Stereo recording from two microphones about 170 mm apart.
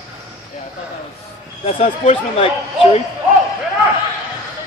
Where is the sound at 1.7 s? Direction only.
35° left (ahead or behind).